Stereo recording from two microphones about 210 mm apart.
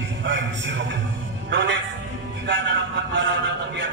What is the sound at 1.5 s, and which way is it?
Speech, 60° right (ahead or behind).